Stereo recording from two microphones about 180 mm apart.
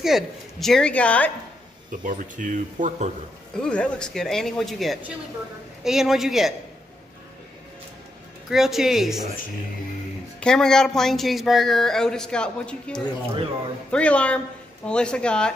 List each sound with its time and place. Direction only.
0.0 s speech: centre (ahead or behind)
1.9 s speech: 50° right (ahead or behind)
3.5 s speech: 5° left (ahead or behind)
8.5 s speech: centre (ahead or behind)
10.4 s speech: 5° left (ahead or behind)